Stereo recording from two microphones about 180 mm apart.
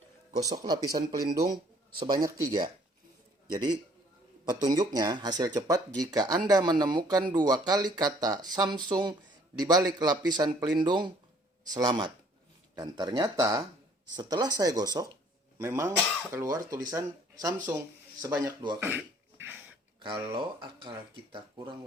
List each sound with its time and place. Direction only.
0.3 s speech: 20° right (ahead or behind)
18.8 s throat clearing: 10° right (ahead or behind)
20.0 s speech: 25° right (ahead or behind)